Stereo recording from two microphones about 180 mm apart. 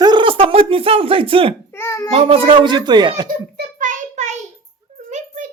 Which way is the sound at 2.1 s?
30° right (ahead or behind).